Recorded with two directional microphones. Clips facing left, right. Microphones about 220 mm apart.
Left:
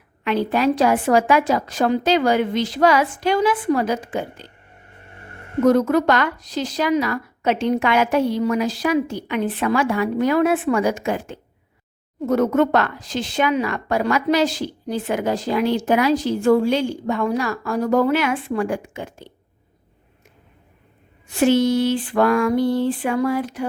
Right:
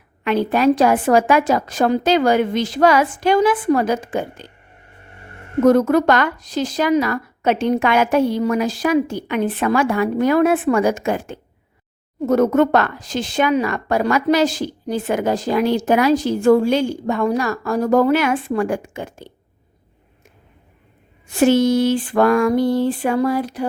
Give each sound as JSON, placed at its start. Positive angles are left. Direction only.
{"t": 0.3, "sound": "speech", "side_deg": -45}
{"t": 5.6, "sound": "speech", "side_deg": -50}
{"t": 21.2, "sound": "speech", "side_deg": -45}